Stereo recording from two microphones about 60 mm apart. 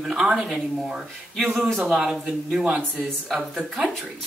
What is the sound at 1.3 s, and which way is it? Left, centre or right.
Speech, centre.